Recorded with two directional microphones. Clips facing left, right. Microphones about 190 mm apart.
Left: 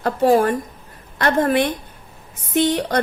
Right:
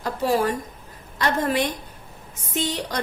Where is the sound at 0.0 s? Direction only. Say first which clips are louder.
Left 6 dB; 55° left (ahead or behind).